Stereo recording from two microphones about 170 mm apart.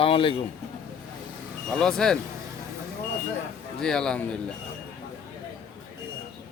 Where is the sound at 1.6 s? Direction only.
5° left (ahead or behind).